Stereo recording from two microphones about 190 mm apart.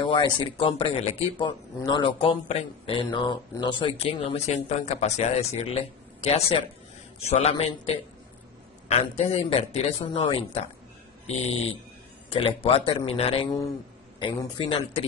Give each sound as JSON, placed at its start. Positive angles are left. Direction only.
{"t": 0.0, "sound": "speech", "side_deg": 25}